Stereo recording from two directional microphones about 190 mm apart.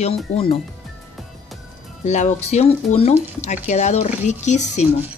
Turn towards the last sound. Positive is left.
turn(degrees=40)  # may be behind; listen again after turning